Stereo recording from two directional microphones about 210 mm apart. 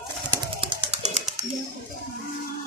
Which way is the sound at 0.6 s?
25° right (ahead or behind).